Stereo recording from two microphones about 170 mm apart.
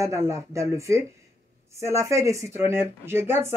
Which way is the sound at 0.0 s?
15° right (ahead or behind).